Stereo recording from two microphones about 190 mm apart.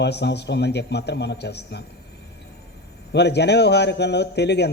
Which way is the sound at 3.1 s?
60° left (ahead or behind).